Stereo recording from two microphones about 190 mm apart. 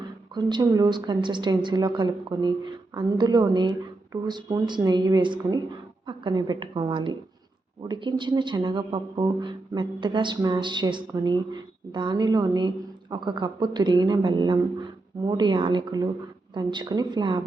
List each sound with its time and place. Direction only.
0.3 s speech: 25° right (ahead or behind)